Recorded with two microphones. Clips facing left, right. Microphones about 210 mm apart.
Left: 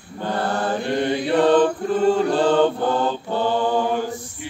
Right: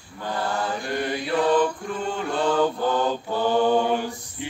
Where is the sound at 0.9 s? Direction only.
25° left (ahead or behind).